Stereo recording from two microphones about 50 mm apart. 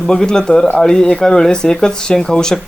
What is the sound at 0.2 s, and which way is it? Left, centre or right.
Speech, centre.